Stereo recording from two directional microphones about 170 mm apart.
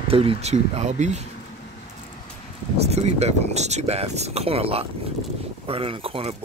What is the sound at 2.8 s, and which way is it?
Speech, 40° right (ahead or behind).